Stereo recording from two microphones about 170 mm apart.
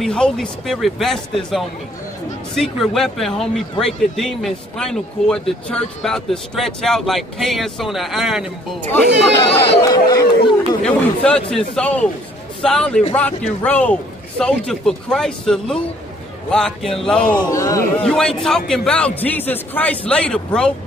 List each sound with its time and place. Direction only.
0.0 s speech: 5° left (ahead or behind)
9.4 s speech: 30° left (ahead or behind)
10.8 s a man's voice: 5° left (ahead or behind)
17.5 s speech: 20° left (ahead or behind)
18.0 s a man's voice: 5° left (ahead or behind)